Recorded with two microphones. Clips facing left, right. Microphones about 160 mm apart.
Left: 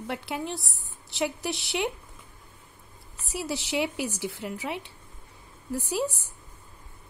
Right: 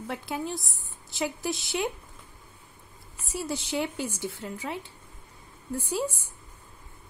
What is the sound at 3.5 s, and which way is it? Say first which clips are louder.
Speech: left 1 dB; 75° left (ahead or behind).